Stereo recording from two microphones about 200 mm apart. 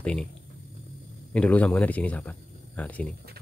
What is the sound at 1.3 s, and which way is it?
Speech, 5° left (ahead or behind).